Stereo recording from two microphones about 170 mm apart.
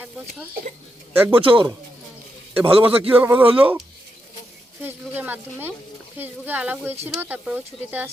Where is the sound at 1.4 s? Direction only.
30° right (ahead or behind).